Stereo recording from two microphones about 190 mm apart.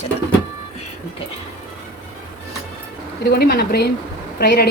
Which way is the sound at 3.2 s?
55° left (ahead or behind).